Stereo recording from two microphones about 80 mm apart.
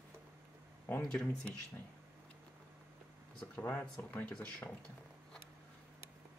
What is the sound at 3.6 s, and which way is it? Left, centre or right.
Speech, left.